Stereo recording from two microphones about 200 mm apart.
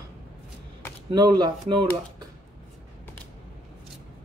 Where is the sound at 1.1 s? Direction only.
20° right (ahead or behind).